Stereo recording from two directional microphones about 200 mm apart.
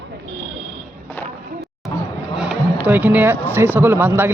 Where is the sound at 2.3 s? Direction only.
5° right (ahead or behind).